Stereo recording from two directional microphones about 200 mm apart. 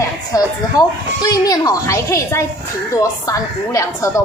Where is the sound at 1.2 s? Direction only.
20° left (ahead or behind).